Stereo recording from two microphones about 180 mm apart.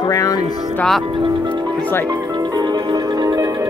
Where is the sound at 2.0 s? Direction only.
20° right (ahead or behind).